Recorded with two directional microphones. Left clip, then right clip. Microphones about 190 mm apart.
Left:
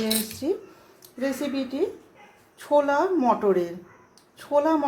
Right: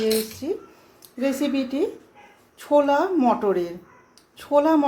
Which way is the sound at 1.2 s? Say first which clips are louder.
Right 4 dB; 15° right (ahead or behind).